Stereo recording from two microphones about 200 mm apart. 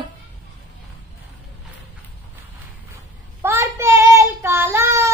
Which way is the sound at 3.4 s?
10° right (ahead or behind).